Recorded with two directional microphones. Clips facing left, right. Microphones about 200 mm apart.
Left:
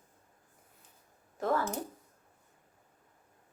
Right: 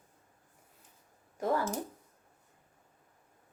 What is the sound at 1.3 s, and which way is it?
Speech, 10° right (ahead or behind).